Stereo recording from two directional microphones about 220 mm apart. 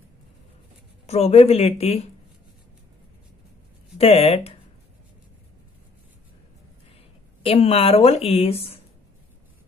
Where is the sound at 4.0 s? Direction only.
30° left (ahead or behind).